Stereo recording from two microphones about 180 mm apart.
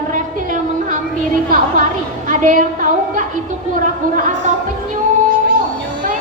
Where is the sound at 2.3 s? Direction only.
45° right (ahead or behind).